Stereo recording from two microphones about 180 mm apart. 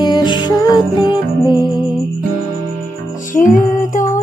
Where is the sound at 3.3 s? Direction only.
45° left (ahead or behind).